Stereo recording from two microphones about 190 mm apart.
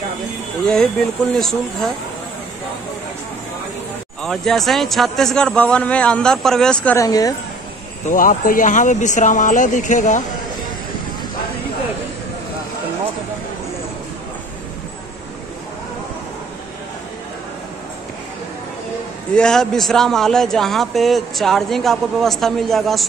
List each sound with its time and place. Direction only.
1.3 s a man's voice: centre (ahead or behind)
4.2 s a man's voice: centre (ahead or behind)
7.1 s speech: 20° left (ahead or behind)
8.1 s speech: 45° left (ahead or behind)
19.3 s a man's voice: 5° left (ahead or behind)